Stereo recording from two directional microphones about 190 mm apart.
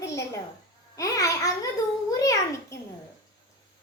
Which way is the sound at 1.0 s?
15° left (ahead or behind).